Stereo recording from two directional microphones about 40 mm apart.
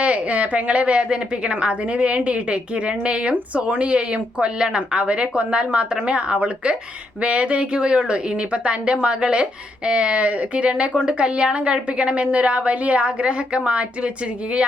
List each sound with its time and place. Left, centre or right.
0.0 s a woman's voice: right